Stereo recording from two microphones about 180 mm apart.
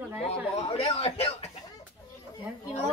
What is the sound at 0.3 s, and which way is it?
Speech, 35° left (ahead or behind).